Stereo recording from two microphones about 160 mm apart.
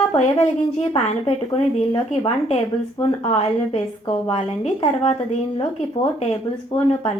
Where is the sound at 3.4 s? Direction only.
40° left (ahead or behind).